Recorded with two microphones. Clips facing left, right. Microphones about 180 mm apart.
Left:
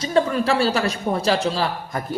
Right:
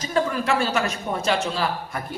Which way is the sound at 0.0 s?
35° left (ahead or behind).